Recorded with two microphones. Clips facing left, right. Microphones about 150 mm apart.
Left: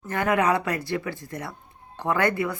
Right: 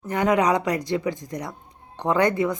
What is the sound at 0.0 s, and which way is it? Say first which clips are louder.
Speech: right 2 dB; 15° right (ahead or behind).